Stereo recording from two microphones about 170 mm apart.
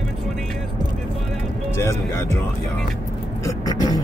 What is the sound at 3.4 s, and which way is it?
Vehicle, 20° left (ahead or behind).